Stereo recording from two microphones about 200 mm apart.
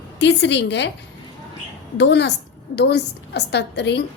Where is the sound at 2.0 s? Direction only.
60° left (ahead or behind).